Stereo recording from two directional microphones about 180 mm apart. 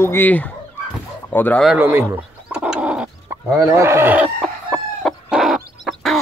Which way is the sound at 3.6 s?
15° right (ahead or behind).